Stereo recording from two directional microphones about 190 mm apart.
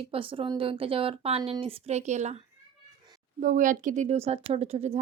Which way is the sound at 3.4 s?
45° right (ahead or behind).